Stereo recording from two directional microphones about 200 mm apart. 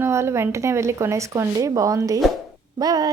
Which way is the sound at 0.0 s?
15° right (ahead or behind).